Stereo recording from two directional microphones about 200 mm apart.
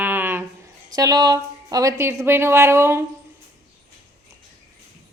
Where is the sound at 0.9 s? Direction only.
20° right (ahead or behind).